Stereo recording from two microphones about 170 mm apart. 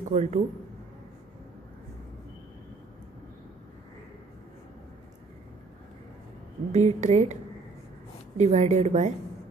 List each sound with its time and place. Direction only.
0.1 s speech: 45° right (ahead or behind)
6.7 s a woman's voice: 40° right (ahead or behind)
8.4 s a woman's voice: 45° right (ahead or behind)